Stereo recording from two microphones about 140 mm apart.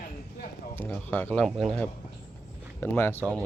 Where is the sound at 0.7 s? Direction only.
15° left (ahead or behind).